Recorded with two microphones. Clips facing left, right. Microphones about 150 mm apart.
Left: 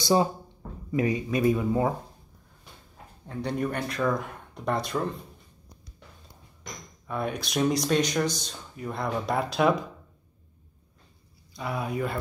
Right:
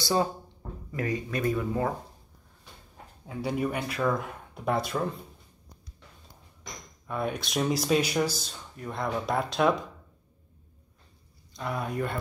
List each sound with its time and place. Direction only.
0.0 s speech: 20° left (ahead or behind)
3.3 s speech: 5° right (ahead or behind)
6.6 s speech: centre (ahead or behind)
11.5 s speech: 5° left (ahead or behind)